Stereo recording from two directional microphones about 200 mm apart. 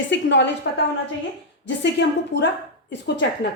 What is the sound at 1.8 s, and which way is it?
Speech, 60° left (ahead or behind).